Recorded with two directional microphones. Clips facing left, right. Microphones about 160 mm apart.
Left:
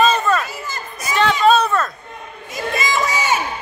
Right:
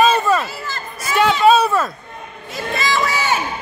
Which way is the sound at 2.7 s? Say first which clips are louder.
Right 1 dB; 15° left (ahead or behind).